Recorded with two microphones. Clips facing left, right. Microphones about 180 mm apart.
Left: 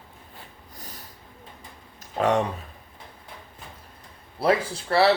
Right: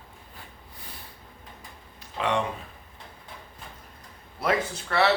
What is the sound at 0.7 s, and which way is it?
Snort, 40° left (ahead or behind).